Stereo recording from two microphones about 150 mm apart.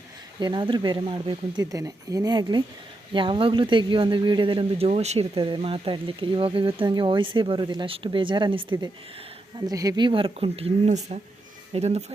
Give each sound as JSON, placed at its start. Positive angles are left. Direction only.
{"t": 0.3, "sound": "speech", "side_deg": -30}